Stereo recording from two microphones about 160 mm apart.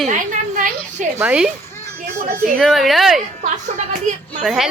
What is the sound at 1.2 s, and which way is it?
Speech, 10° right (ahead or behind).